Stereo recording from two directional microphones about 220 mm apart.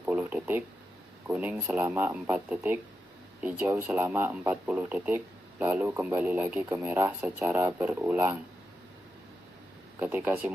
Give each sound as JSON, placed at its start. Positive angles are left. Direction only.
{"t": 0.0, "sound": "a sound", "side_deg": -5}
{"t": 1.3, "sound": "speech", "side_deg": -5}
{"t": 10.0, "sound": "speech", "side_deg": -10}